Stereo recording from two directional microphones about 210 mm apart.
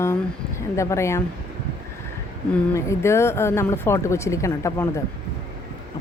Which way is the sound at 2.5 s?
15° left (ahead or behind).